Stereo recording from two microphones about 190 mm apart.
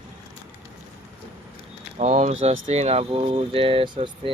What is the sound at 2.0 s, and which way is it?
Speech, 35° right (ahead or behind).